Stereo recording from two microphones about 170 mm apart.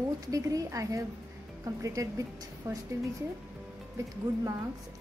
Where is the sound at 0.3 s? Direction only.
20° right (ahead or behind).